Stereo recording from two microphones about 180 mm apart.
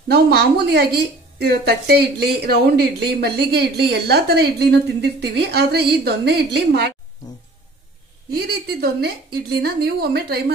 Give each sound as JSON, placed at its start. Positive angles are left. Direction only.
{"t": 0.1, "sound": "a woman's voice", "side_deg": -65}
{"t": 9.0, "sound": "a woman's voice", "side_deg": -65}